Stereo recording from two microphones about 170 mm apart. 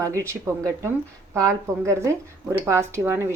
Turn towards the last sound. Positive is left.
turn(degrees=-15)  # may be behind; listen again after turning